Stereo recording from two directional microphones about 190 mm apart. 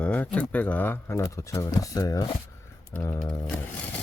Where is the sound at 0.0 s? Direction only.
10° left (ahead or behind).